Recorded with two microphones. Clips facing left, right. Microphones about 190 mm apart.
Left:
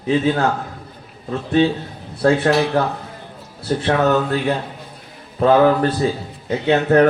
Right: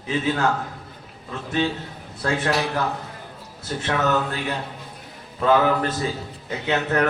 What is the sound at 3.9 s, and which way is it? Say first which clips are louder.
Speech: left 6 dB; 35° left (ahead or behind).